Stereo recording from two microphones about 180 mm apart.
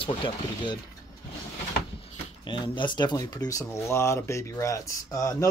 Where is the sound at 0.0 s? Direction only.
25° left (ahead or behind).